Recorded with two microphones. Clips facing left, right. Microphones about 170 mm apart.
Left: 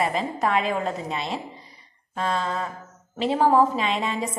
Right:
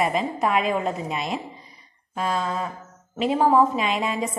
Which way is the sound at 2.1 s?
5° right (ahead or behind).